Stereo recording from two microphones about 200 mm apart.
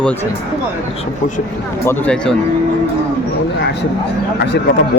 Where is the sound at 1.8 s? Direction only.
10° left (ahead or behind).